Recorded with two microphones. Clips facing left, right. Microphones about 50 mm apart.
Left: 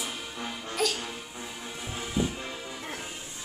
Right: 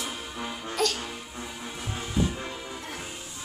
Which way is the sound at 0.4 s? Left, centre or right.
Centre.